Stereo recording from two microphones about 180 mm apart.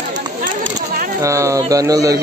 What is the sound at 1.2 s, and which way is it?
Speech, 15° right (ahead or behind).